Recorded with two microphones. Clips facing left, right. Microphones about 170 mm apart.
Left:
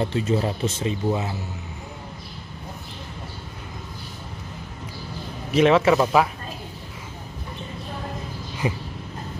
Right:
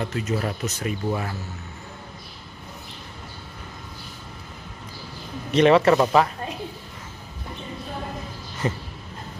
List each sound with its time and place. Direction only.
0.0 s speech: 30° left (ahead or behind)
5.5 s speech: 5° left (ahead or behind)
8.6 s a sound: 15° left (ahead or behind)